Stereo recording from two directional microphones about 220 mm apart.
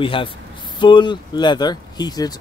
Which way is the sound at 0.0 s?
25° left (ahead or behind).